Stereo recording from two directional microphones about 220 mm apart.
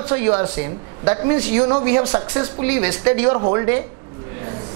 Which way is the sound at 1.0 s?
20° right (ahead or behind).